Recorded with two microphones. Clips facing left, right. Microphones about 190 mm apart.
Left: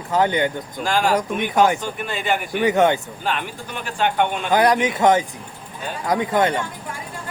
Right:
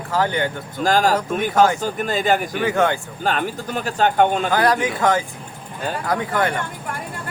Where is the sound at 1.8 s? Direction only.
40° right (ahead or behind).